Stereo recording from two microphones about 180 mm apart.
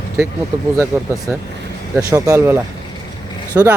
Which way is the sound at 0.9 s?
15° right (ahead or behind).